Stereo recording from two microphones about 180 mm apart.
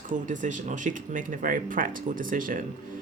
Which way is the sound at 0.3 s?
45° right (ahead or behind).